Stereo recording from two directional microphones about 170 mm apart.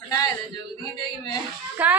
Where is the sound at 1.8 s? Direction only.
10° right (ahead or behind).